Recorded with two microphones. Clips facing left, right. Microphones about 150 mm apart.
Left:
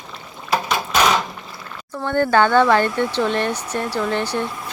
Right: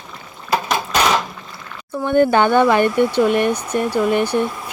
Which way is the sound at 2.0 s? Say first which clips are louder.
Right 3 dB; 15° right (ahead or behind).